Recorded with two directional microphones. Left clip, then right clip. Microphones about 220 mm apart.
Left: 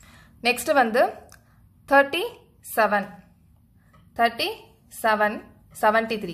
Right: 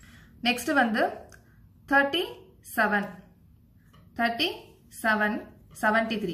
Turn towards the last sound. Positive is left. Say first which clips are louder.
# left 4 dB
turn(degrees=50)  # may be behind; listen again after turning